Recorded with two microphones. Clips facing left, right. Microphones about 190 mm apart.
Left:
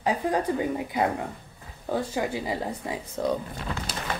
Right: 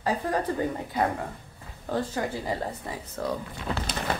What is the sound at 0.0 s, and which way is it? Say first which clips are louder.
Speech: left 2 dB; 15° left (ahead or behind).